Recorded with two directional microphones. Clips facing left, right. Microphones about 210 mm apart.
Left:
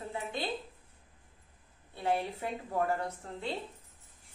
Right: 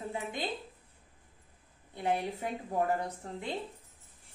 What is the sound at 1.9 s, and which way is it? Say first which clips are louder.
Speech: even; 15° right (ahead or behind).